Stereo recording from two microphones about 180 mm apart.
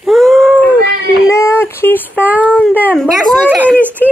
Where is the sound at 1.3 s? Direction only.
15° left (ahead or behind).